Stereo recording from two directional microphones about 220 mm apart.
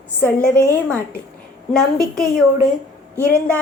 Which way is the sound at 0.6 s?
10° right (ahead or behind).